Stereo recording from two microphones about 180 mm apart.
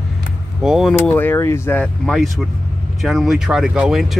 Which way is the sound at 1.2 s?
15° left (ahead or behind).